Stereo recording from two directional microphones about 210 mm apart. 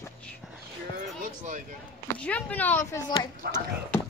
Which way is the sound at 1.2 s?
35° right (ahead or behind).